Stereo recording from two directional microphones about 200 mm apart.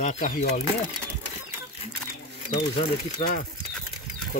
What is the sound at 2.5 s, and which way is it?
Speech, 35° left (ahead or behind).